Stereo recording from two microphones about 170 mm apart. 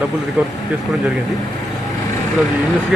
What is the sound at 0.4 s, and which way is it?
Speech, 10° right (ahead or behind).